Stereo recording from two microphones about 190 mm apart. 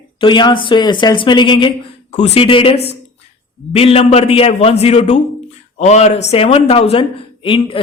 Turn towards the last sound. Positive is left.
turn(degrees=25)  # may be behind; listen again after turning